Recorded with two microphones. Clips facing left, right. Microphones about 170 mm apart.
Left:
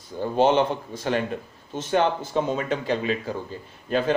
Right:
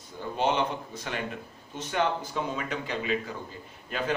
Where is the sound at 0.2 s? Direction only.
30° left (ahead or behind).